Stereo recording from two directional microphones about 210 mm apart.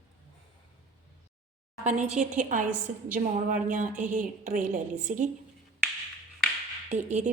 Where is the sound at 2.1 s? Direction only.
35° right (ahead or behind).